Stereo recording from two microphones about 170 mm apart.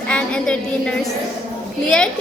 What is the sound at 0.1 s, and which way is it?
A woman's voice, 5° left (ahead or behind).